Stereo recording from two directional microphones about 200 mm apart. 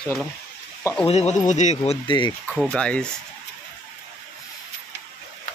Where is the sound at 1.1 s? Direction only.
35° left (ahead or behind).